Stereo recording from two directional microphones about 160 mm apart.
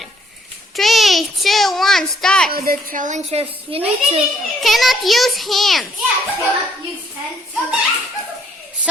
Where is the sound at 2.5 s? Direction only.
65° right (ahead or behind); by 3.4 s 45° right (ahead or behind).